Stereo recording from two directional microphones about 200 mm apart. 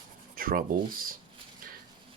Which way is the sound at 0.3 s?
45° right (ahead or behind).